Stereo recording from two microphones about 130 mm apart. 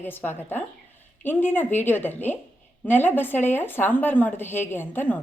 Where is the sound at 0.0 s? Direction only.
15° left (ahead or behind).